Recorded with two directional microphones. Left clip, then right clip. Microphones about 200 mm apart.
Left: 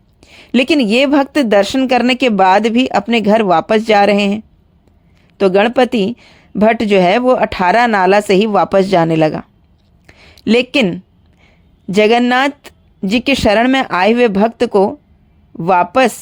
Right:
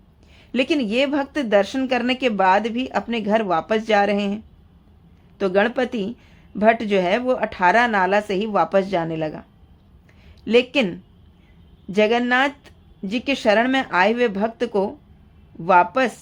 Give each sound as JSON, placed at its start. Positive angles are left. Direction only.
{"t": 0.2, "sound": "speech", "side_deg": 40}
{"t": 10.1, "sound": "a sound", "side_deg": 40}
{"t": 11.9, "sound": "speech", "side_deg": 40}